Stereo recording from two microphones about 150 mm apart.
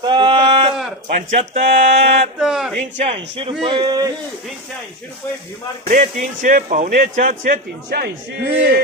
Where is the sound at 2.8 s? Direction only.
50° right (ahead or behind); by 4.1 s 25° right (ahead or behind).